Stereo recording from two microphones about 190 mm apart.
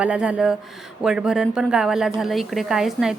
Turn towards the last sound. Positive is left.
turn(degrees=0)  # may be behind; listen again after turning